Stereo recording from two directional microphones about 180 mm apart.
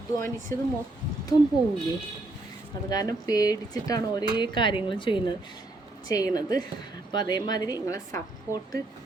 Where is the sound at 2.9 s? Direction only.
20° left (ahead or behind).